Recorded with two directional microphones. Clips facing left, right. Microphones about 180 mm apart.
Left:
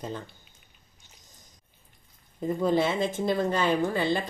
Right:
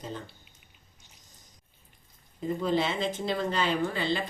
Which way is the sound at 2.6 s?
50° left (ahead or behind).